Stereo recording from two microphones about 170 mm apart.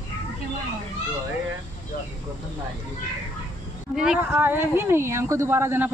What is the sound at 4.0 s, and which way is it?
Speech, 5° right (ahead or behind).